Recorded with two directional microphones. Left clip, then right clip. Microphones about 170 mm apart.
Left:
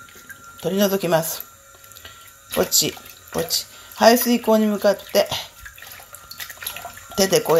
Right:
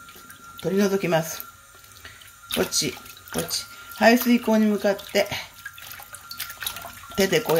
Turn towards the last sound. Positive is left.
turn(degrees=5)  # may be behind; listen again after turning